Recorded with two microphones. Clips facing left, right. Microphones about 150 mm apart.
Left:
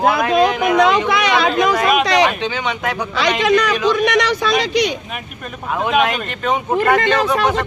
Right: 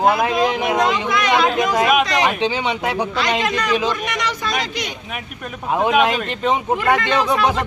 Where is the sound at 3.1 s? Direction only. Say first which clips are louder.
Left 5 dB; 80° left.